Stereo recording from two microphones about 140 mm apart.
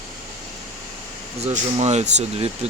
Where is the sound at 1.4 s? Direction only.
50° right (ahead or behind).